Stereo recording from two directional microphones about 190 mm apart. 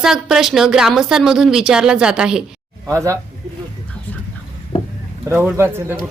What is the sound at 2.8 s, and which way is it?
Speech, 15° right (ahead or behind).